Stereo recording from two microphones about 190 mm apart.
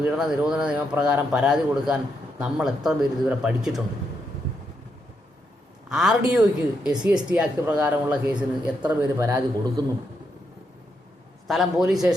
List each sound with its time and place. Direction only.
0.0 s a man's voice: 5° right (ahead or behind)
5.9 s a man's voice: centre (ahead or behind); by 9.9 s 20° right (ahead or behind)
11.4 s a man's voice: centre (ahead or behind)